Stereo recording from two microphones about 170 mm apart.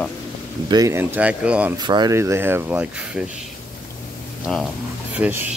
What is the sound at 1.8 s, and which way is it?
Speech, 25° right (ahead or behind).